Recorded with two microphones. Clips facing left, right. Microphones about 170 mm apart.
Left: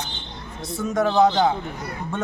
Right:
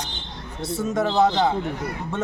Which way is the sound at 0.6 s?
25° right (ahead or behind).